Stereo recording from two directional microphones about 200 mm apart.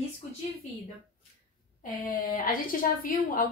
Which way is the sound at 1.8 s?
45° left (ahead or behind).